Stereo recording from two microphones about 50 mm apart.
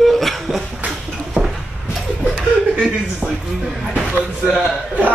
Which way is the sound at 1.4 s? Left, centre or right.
Centre.